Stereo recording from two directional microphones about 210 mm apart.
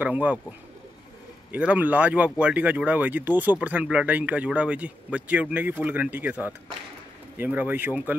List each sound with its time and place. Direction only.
0.0 s speech: 5° right (ahead or behind)